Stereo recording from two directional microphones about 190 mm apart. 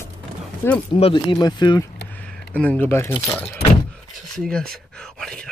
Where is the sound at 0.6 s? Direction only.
10° left (ahead or behind).